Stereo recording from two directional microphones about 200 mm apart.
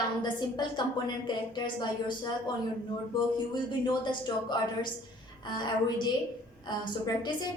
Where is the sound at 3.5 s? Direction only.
25° left (ahead or behind).